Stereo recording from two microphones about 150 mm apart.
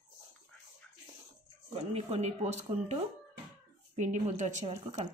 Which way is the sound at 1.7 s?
45° right (ahead or behind).